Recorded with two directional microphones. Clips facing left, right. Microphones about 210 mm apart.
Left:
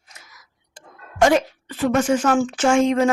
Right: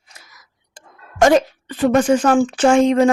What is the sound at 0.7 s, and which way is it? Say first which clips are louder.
A child's voice: right 2 dB; 45° right (ahead or behind).